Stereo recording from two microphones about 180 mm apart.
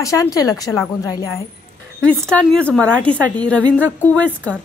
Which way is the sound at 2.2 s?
5° left (ahead or behind).